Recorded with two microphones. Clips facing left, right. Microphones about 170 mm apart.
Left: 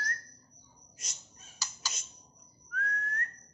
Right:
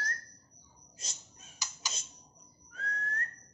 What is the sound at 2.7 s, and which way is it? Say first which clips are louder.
Whistling: left 3 dB; 30° right (ahead or behind).